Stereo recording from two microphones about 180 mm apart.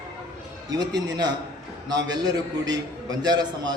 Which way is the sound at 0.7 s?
25° right (ahead or behind).